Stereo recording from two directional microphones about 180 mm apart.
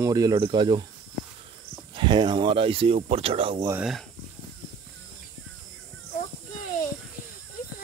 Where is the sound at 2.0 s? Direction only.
25° right (ahead or behind).